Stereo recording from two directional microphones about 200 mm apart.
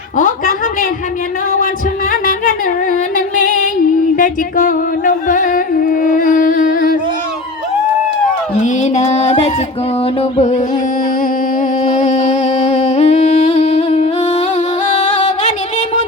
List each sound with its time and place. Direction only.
0.2 s a sound: 40° left (ahead or behind)
2.2 s music: 40° left (ahead or behind)
8.6 s music: 35° left (ahead or behind)
11.9 s humming: 40° left (ahead or behind)
14.9 s music: 35° left (ahead or behind)